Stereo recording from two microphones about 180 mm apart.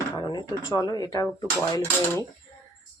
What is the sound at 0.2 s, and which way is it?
Speech, 25° left (ahead or behind).